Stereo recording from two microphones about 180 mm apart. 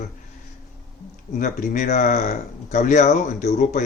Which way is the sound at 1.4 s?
45° left (ahead or behind).